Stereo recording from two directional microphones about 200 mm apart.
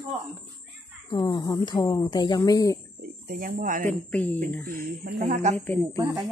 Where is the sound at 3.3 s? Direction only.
45° right (ahead or behind).